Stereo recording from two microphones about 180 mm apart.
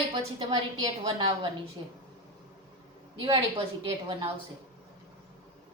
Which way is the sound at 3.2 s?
30° right (ahead or behind).